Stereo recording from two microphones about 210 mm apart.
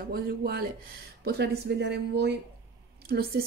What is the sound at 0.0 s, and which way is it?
A woman's voice, 45° right (ahead or behind).